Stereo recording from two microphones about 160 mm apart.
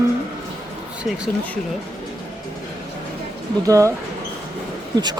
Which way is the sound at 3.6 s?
20° right (ahead or behind).